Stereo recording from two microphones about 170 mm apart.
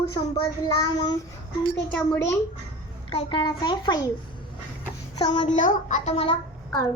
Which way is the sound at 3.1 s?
30° left (ahead or behind).